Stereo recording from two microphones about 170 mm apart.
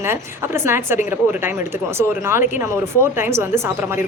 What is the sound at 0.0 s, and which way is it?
Speech, 15° right (ahead or behind).